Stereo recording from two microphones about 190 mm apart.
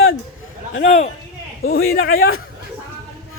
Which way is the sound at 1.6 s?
55° left (ahead or behind).